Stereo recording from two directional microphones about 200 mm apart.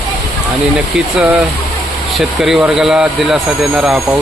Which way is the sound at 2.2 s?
Centre (ahead or behind).